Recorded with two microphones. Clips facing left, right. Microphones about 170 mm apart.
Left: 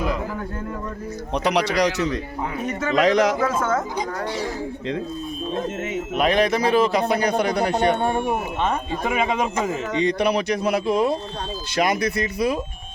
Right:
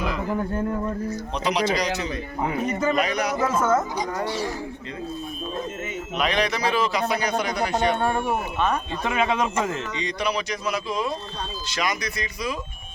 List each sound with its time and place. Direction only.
1.3 s a man's voice: 65° left (ahead or behind)
2.9 s speech: 90° left
3.4 s speech: 5° right (ahead or behind)
6.1 s a man's voice: 50° left (ahead or behind)
7.9 s speech: 20° left (ahead or behind)
9.0 s speech: 10° left (ahead or behind)
9.9 s speech: 55° left (ahead or behind)